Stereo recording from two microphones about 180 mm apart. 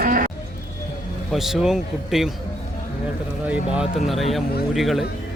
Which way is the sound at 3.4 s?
5° right (ahead or behind).